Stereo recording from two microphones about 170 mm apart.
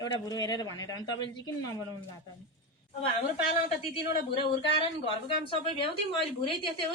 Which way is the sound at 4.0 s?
30° left (ahead or behind).